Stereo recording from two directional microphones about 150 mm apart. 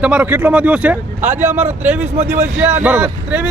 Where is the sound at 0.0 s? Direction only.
10° right (ahead or behind).